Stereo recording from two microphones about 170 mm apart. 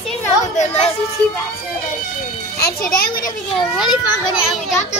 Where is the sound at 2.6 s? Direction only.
60° left (ahead or behind).